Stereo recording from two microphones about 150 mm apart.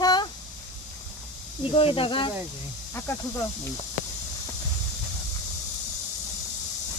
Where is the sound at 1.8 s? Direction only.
40° left (ahead or behind).